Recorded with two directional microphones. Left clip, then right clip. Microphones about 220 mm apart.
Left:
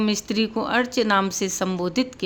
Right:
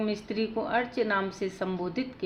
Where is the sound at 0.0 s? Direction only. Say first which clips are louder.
Left 7 dB; 50° left (ahead or behind).